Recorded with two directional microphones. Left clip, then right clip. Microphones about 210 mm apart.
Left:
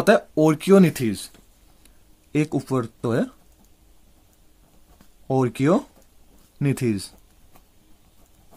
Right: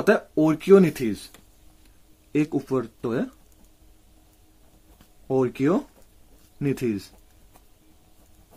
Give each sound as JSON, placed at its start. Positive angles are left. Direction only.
{"t": 0.0, "sound": "speech", "side_deg": 35}
{"t": 2.3, "sound": "speech", "side_deg": 40}
{"t": 5.3, "sound": "speech", "side_deg": 40}